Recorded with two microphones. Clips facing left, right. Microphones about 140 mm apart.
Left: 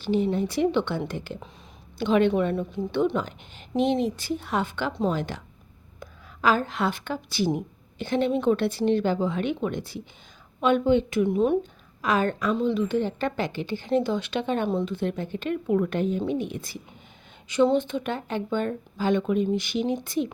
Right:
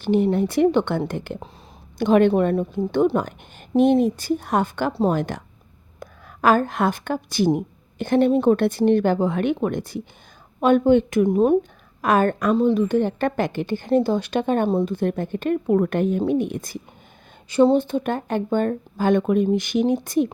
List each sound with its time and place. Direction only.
0.0 s a woman's voice: 55° right (ahead or behind); by 5.1 s 35° right (ahead or behind)
5.1 s a woman's voice: 50° right (ahead or behind)
17.5 s a woman's voice: 35° right (ahead or behind)